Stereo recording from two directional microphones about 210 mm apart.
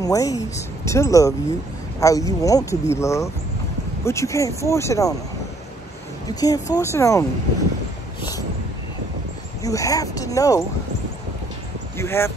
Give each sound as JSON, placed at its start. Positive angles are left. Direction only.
{"t": 0.0, "sound": "speech", "side_deg": 15}
{"t": 6.2, "sound": "speech", "side_deg": 15}
{"t": 9.6, "sound": "speech", "side_deg": 15}
{"t": 12.0, "sound": "speech", "side_deg": 10}